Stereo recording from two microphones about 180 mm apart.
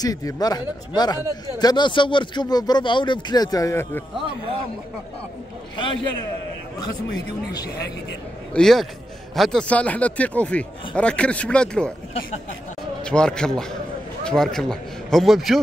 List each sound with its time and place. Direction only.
0.0 s speech: 20° left (ahead or behind)
8.5 s a man's voice: centre (ahead or behind)
13.0 s a man's voice: 5° left (ahead or behind)